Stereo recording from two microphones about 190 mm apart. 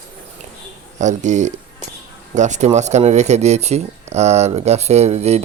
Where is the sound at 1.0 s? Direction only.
40° right (ahead or behind).